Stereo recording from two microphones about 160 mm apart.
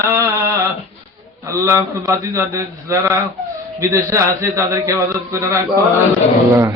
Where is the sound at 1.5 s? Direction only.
20° right (ahead or behind).